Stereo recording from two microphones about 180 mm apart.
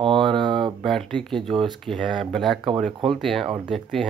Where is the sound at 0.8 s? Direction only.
Centre (ahead or behind).